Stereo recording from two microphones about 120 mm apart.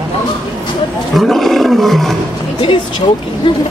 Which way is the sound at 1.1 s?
Centre (ahead or behind).